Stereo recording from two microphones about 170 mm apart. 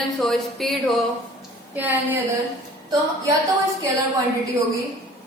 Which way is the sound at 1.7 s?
10° right (ahead or behind).